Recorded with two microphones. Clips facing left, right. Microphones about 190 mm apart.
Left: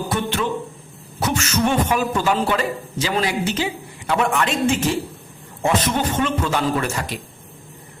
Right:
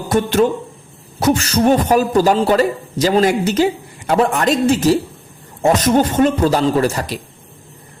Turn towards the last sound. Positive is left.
turn(degrees=-35)  # may be behind; listen again after turning